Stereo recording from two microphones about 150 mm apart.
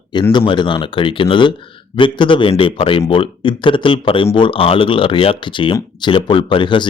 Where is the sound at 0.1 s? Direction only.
30° left (ahead or behind).